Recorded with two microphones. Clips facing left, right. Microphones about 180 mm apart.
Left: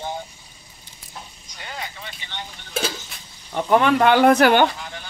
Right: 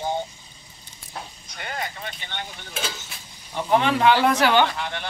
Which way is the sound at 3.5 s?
50° left (ahead or behind).